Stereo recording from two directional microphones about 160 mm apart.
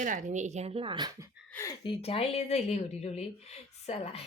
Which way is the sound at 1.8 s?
35° left (ahead or behind).